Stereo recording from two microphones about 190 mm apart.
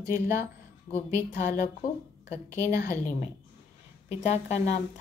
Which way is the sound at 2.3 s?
15° right (ahead or behind).